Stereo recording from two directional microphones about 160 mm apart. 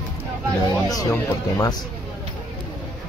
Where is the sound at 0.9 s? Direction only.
20° left (ahead or behind).